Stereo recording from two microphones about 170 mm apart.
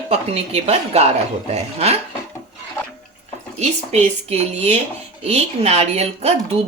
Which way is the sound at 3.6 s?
40° right (ahead or behind).